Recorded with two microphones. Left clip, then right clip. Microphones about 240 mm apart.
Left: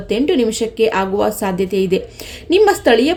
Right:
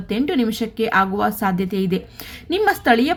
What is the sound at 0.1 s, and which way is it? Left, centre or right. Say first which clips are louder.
Speech: left 6 dB; right.